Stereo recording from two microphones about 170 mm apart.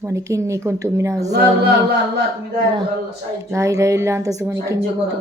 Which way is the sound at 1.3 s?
75° right (ahead or behind).